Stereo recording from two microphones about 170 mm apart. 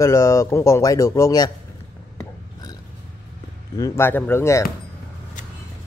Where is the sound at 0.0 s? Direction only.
15° left (ahead or behind).